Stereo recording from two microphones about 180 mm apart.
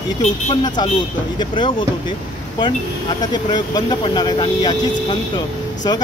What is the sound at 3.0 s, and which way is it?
Speech, 25° left (ahead or behind).